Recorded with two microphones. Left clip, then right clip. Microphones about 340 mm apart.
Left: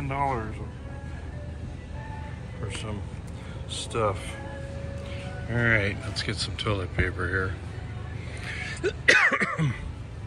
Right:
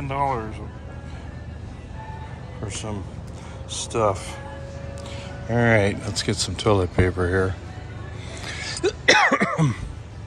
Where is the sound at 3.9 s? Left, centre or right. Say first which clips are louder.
Right 6 dB; centre.